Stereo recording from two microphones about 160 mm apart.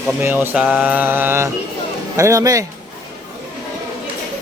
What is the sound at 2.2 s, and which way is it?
Speech, 20° right (ahead or behind).